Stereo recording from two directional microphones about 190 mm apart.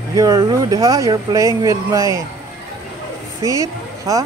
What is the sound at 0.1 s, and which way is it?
Speech, 20° right (ahead or behind).